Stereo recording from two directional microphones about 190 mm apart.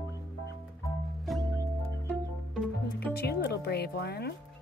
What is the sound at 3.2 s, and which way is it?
Music, 55° left (ahead or behind).